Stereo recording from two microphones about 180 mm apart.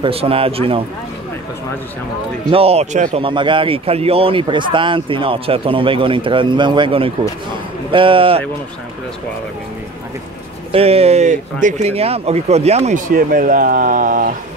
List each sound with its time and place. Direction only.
0.0 s speech: 30° right (ahead or behind)
2.5 s speech: 35° right (ahead or behind)
3.2 s speech: 30° right (ahead or behind)
10.7 s speech: 35° right (ahead or behind)
13.1 s speech: 50° right (ahead or behind)